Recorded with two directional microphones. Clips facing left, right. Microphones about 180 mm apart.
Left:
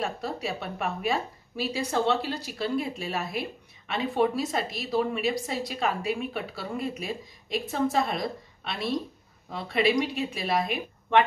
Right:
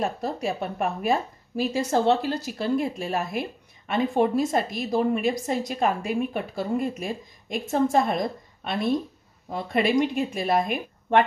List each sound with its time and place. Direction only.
0.0 s a woman's voice: 45° right (ahead or behind)